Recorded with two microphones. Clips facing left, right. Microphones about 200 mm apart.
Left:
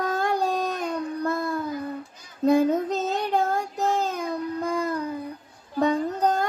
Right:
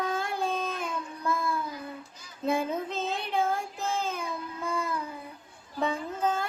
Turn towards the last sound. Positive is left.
turn(degrees=40)  # may be behind; listen again after turning